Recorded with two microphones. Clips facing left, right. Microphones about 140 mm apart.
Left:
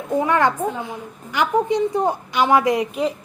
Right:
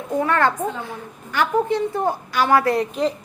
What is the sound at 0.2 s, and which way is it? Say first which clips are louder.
A woman's voice: left 1 dB; 15° left (ahead or behind).